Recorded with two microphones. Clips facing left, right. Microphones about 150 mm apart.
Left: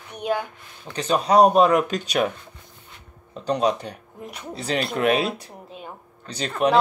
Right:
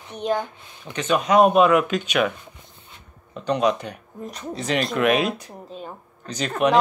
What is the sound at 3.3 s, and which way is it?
Speech, 35° left (ahead or behind).